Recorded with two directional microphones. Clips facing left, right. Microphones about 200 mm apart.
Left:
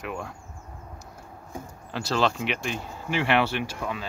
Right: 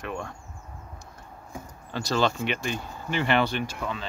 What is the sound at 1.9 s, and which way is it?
Speech, 5° left (ahead or behind).